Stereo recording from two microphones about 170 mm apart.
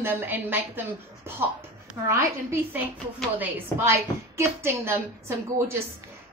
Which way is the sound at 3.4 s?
15° right (ahead or behind).